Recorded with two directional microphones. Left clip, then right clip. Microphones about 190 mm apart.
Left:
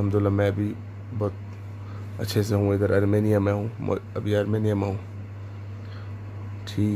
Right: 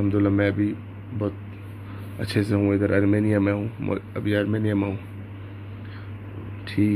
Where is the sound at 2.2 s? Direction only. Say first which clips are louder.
Right 2 dB; 30° left (ahead or behind).